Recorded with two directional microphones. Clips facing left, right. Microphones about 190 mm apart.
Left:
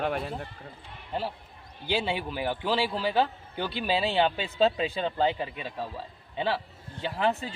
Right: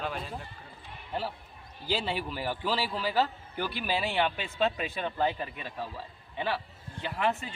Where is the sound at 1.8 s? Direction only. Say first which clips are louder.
Left 3 dB; 15° left (ahead or behind).